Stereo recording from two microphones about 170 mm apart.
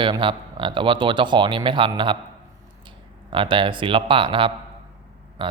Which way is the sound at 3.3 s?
30° right (ahead or behind).